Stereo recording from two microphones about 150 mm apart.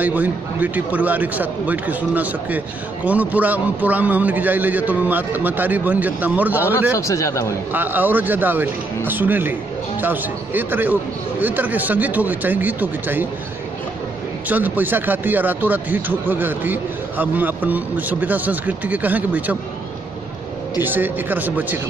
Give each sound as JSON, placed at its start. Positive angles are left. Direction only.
{"t": 0.0, "sound": "speech", "side_deg": -10}
{"t": 7.0, "sound": "speech", "side_deg": 20}
{"t": 7.7, "sound": "speech", "side_deg": -10}
{"t": 14.5, "sound": "speech", "side_deg": -10}
{"t": 20.8, "sound": "speech", "side_deg": -10}